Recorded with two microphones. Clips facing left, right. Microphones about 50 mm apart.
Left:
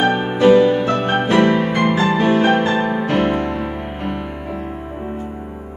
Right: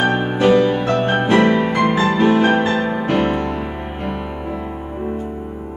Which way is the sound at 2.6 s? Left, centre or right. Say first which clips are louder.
Left 1 dB; left.